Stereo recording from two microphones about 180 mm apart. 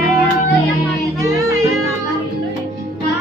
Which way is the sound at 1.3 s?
20° right (ahead or behind).